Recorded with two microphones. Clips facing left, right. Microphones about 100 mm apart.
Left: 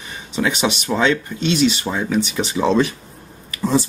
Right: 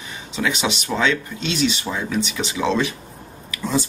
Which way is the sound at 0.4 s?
35° left (ahead or behind).